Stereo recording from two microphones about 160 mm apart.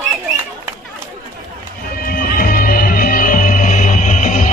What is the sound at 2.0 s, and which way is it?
Music, 65° left (ahead or behind).